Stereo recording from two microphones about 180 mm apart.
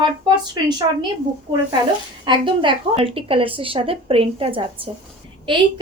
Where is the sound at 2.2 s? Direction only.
25° right (ahead or behind).